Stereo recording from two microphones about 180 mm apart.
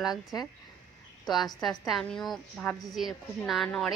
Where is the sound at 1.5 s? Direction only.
Centre (ahead or behind).